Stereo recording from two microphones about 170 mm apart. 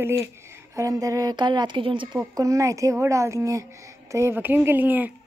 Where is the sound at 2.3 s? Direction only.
20° right (ahead or behind).